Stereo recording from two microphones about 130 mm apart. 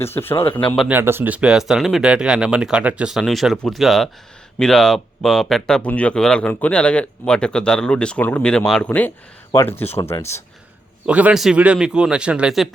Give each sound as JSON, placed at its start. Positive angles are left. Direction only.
{"t": 0.0, "sound": "speech", "side_deg": 15}
{"t": 0.9, "sound": "speech", "side_deg": -15}
{"t": 11.0, "sound": "a man's voice", "side_deg": -10}